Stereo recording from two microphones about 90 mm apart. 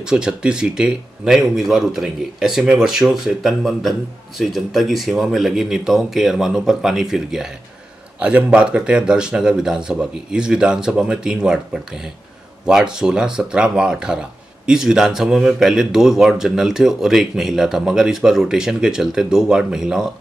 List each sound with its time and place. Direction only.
0.0 s speech: 5° right (ahead or behind)